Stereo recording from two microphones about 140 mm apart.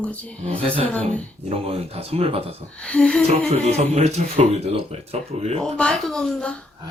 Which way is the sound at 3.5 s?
50° right (ahead or behind).